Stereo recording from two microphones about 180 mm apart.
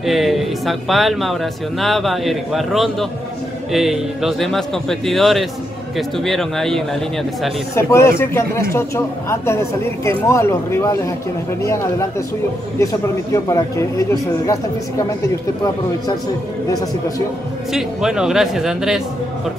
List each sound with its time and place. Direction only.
0.0 s speech: centre (ahead or behind)
7.7 s speech: 15° left (ahead or behind)
17.7 s speech: 5° right (ahead or behind)